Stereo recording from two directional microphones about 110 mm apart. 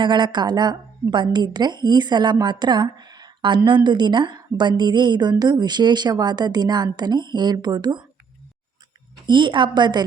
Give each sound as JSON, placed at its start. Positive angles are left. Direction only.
{"t": 0.0, "sound": "a woman's voice", "side_deg": -45}
{"t": 9.2, "sound": "a woman's voice", "side_deg": -45}